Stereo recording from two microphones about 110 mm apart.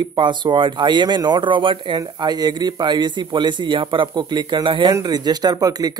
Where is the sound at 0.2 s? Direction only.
45° right (ahead or behind).